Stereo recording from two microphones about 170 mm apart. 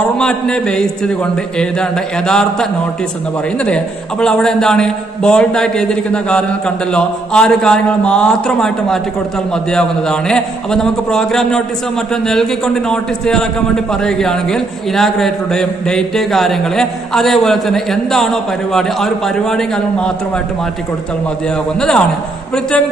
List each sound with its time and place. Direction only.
0.2 s a man's voice: 5° left (ahead or behind)
21.7 s a man's voice: 5° left (ahead or behind)